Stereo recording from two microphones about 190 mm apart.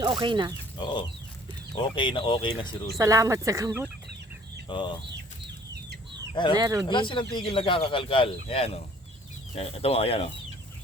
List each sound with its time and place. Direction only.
0.0 s speech: 25° right (ahead or behind)
0.8 s speech: 25° left (ahead or behind)
3.0 s speech: 15° right (ahead or behind)
4.7 s speech: 25° left (ahead or behind)
6.3 s speech: 25° left (ahead or behind)
6.6 s speech: 20° right (ahead or behind)
6.8 s speech: 25° left (ahead or behind)